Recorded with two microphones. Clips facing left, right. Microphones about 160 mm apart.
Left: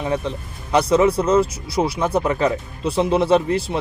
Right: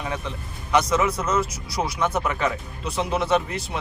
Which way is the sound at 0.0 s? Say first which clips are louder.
Left 7 dB; 35° left (ahead or behind).